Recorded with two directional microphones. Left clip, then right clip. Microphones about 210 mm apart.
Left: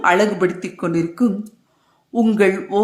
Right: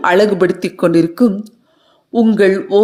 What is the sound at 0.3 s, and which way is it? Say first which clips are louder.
Speech: right 6 dB; 25° right (ahead or behind).